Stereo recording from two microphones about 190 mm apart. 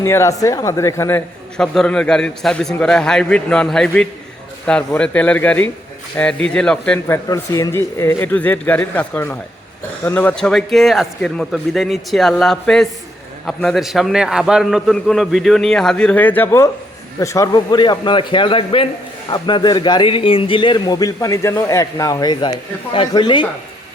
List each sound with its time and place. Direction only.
0.0 s a man's voice: 15° left (ahead or behind)
7.3 s a man's voice: 20° left (ahead or behind)